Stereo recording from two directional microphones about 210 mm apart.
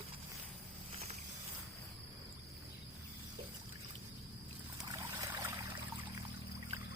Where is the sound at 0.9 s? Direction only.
30° right (ahead or behind).